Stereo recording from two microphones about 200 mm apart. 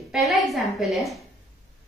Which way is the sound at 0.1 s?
Centre (ahead or behind).